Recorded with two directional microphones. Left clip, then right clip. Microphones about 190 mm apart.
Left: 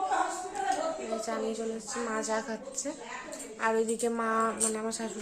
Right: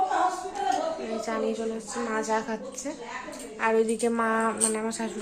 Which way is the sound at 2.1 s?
5° left (ahead or behind).